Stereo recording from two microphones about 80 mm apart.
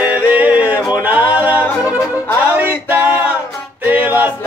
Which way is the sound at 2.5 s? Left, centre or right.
Right.